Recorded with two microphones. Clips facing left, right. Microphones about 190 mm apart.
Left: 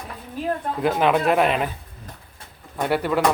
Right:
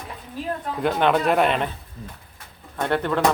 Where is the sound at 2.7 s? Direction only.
10° left (ahead or behind).